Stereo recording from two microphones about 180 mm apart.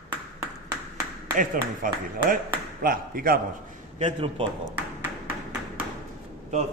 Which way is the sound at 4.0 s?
30° right (ahead or behind).